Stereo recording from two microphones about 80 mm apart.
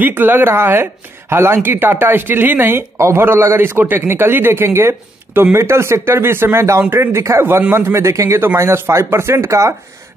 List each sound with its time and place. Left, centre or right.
0.0 s a man's voice: right